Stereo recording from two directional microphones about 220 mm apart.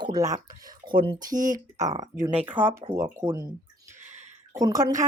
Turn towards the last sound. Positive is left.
turn(degrees=-15)  # may be behind; listen again after turning